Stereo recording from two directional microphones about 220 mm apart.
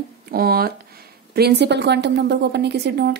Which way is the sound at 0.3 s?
45° right (ahead or behind).